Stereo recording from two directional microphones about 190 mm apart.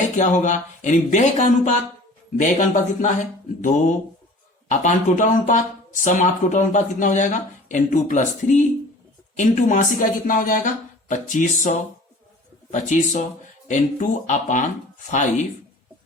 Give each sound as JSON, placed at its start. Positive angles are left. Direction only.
{"t": 0.2, "sound": "speech", "side_deg": 40}
{"t": 12.7, "sound": "speech", "side_deg": 40}